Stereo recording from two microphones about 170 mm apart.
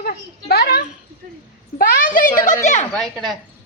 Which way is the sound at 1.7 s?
50° left (ahead or behind).